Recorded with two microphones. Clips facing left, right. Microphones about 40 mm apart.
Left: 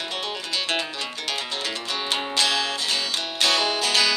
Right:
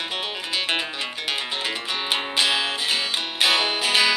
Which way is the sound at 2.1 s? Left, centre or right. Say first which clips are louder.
Right 1 dB; centre.